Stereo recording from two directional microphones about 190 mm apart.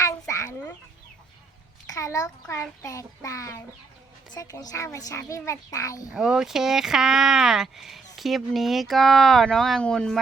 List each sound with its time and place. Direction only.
0.0 s chicken: 15° left (ahead or behind)
1.9 s child singing: 20° left (ahead or behind)
6.1 s speech: 5° right (ahead or behind)